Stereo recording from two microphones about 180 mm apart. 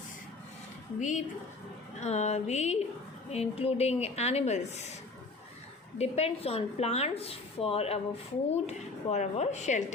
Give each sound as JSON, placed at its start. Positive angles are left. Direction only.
{"t": 0.9, "sound": "speech", "side_deg": 45}
{"t": 6.0, "sound": "speech", "side_deg": 35}